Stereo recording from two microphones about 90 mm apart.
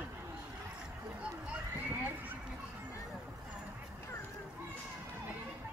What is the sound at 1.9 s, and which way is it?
Horse, 20° right (ahead or behind).